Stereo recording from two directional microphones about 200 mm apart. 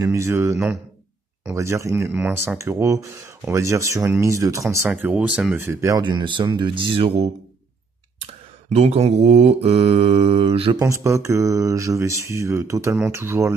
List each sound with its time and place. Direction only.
0.0 s speech: 15° right (ahead or behind)
8.6 s mantra: 35° right (ahead or behind)
10.8 s speech: 15° right (ahead or behind)